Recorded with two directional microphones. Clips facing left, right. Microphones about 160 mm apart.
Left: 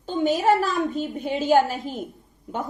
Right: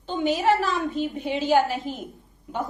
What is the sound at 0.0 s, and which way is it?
A woman's voice, 45° left (ahead or behind).